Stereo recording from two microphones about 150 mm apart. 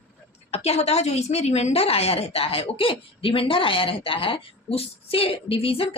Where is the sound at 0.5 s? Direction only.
45° left (ahead or behind).